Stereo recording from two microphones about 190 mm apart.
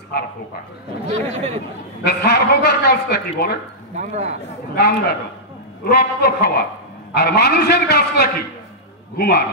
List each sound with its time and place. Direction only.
1.1 s speech: 35° right (ahead or behind)
2.0 s a man's voice: 55° left (ahead or behind)
3.9 s speech: 35° right (ahead or behind)
4.7 s a man's voice: 55° left (ahead or behind)